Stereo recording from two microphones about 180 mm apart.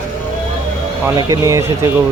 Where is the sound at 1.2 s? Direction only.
20° right (ahead or behind).